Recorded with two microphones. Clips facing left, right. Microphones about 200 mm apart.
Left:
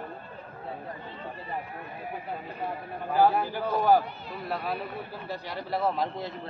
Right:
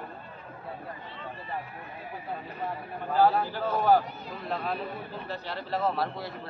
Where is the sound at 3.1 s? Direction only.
15° left (ahead or behind).